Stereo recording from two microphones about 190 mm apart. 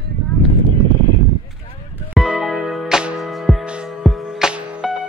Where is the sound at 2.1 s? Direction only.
Centre (ahead or behind).